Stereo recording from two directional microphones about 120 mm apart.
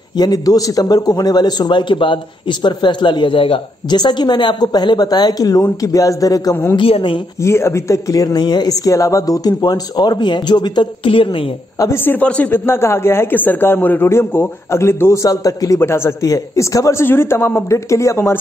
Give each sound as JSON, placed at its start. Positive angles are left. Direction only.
{"t": 0.2, "sound": "a man's voice", "side_deg": 30}
{"t": 6.5, "sound": "a woman's voice", "side_deg": 20}
{"t": 6.8, "sound": "a man's voice", "side_deg": 50}
{"t": 7.4, "sound": "a man's voice", "side_deg": 25}
{"t": 11.8, "sound": "speech", "side_deg": 20}